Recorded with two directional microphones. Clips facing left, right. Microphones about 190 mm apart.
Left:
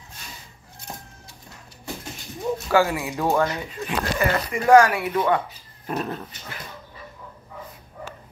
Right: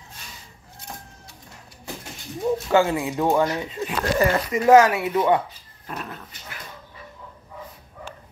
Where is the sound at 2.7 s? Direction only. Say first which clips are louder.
Even; 25° right (ahead or behind).